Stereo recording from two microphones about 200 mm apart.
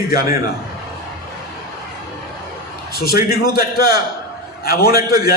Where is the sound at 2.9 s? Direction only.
50° left (ahead or behind).